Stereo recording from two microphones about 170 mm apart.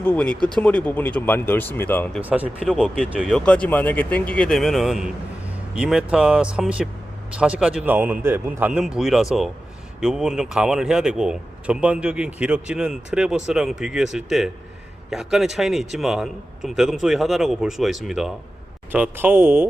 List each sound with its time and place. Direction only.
0.0 s speech: 5° left (ahead or behind)
2.2 s a man's voice: 10° right (ahead or behind)
2.6 s a man's voice: centre (ahead or behind)